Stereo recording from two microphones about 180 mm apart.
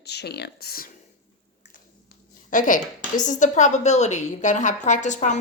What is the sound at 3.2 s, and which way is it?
A woman's voice, 45° left (ahead or behind).